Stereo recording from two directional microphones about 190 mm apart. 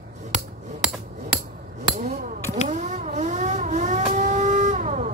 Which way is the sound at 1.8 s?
40° right (ahead or behind).